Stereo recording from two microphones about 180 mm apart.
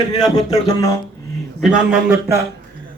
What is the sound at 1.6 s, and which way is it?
Speech, 5° right (ahead or behind).